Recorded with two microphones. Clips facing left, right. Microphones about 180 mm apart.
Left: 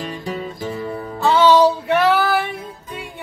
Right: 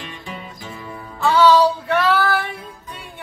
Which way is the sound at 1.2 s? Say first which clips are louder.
Left 1 dB; 20° left (ahead or behind).